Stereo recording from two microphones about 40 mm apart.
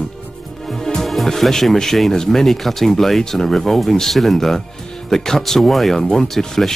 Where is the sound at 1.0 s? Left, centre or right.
Centre.